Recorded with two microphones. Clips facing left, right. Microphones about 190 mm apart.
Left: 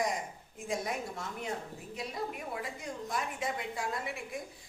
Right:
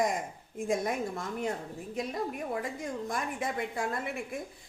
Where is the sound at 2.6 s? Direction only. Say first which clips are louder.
Right 5 dB; 50° right (ahead or behind).